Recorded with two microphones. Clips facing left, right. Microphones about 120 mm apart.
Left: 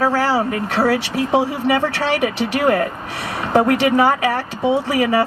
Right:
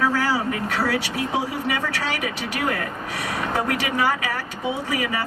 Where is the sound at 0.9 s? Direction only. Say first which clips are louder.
Left 7 dB; 25° left (ahead or behind).